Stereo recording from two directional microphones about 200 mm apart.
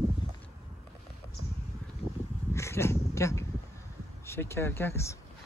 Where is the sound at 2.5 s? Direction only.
15° left (ahead or behind).